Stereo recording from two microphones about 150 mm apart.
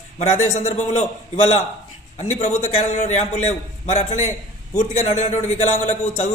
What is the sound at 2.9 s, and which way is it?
A man's voice, 50° left (ahead or behind).